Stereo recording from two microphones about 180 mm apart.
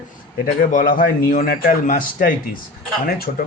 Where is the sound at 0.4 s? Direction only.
45° left (ahead or behind).